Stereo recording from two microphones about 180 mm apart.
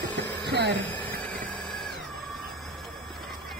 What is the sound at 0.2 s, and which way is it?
Vacuum cleaner, 70° right (ahead or behind).